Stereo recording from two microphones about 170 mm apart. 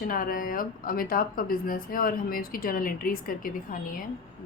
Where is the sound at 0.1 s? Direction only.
55° left (ahead or behind).